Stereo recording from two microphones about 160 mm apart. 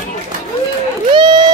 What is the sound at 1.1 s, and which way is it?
Music, 30° right (ahead or behind).